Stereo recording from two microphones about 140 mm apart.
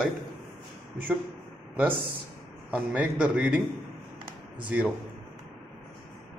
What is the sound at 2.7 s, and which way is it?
Speech, 10° right (ahead or behind).